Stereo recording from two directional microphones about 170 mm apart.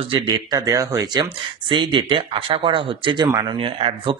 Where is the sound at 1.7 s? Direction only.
30° right (ahead or behind).